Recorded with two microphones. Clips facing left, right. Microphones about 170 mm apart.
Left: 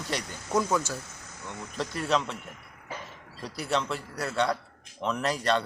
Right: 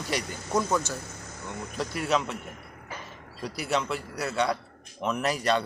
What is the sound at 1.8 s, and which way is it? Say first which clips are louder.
Speech: even; 5° right (ahead or behind).